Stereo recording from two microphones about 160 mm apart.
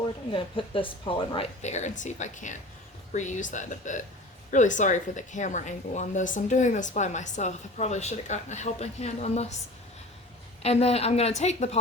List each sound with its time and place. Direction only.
0.3 s a woman's voice: 30° left (ahead or behind)
1.6 s speech: 45° left (ahead or behind)
10.6 s a woman's voice: 40° left (ahead or behind)